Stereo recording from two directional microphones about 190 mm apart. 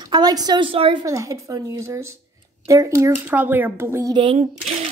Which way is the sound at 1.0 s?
15° right (ahead or behind).